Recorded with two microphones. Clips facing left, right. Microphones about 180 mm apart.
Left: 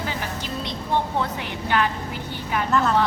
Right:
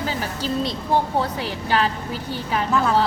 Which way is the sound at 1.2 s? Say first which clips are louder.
Right 2 dB; 35° right (ahead or behind).